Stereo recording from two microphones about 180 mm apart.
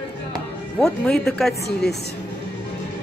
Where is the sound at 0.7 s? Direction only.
5° left (ahead or behind).